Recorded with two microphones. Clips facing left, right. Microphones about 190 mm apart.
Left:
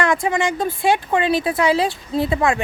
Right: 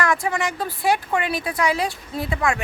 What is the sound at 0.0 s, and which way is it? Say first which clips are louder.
Speech: left 4 dB; 25° left (ahead or behind).